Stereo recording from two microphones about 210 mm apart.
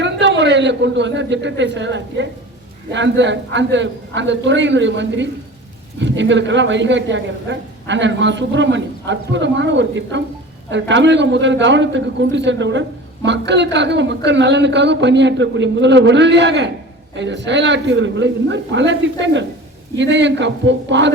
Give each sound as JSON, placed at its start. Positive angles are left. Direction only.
{"t": 0.0, "sound": "a man's voice", "side_deg": -55}